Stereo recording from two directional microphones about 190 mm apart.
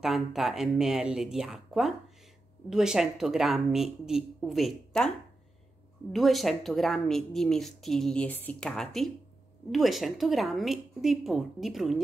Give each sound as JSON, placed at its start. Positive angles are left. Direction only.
{"t": 0.0, "sound": "speech", "side_deg": 0}
{"t": 6.1, "sound": "speech", "side_deg": 0}